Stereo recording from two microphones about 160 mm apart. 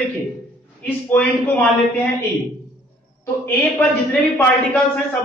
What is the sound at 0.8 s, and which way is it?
Speech, 10° left (ahead or behind).